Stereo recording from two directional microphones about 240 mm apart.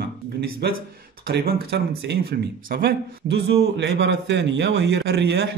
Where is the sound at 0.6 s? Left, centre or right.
Right.